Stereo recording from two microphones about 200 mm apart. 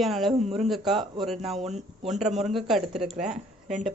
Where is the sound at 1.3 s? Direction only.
Centre (ahead or behind).